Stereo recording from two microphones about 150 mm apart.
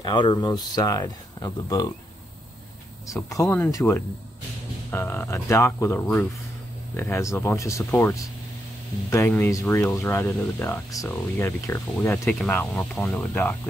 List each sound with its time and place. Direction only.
0.0 s speech: 30° left (ahead or behind)
3.3 s speech: 20° left (ahead or behind)
13.1 s speech: 20° left (ahead or behind)